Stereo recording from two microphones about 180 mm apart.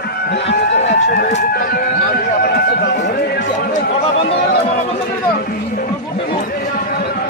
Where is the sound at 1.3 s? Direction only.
55° left (ahead or behind).